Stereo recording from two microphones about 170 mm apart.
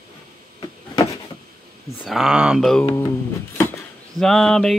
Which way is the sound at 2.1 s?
5° right (ahead or behind).